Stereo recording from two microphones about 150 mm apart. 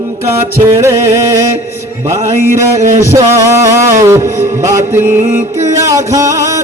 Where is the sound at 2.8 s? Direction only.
55° right (ahead or behind).